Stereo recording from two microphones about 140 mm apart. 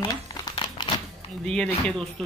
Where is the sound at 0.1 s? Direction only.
25° left (ahead or behind).